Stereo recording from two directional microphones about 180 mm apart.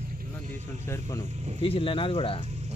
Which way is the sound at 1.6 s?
30° left (ahead or behind).